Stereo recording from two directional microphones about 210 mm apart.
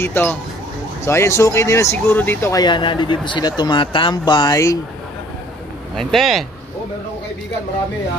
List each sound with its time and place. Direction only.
0.0 s speech: 10° left (ahead or behind)
5.9 s speech: centre (ahead or behind)